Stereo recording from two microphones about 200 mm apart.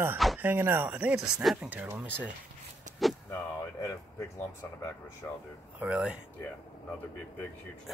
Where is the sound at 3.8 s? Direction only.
15° left (ahead or behind).